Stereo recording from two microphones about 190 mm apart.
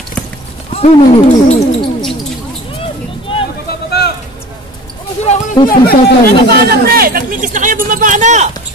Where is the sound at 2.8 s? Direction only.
30° left (ahead or behind).